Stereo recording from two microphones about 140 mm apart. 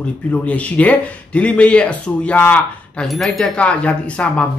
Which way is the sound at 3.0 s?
Centre (ahead or behind).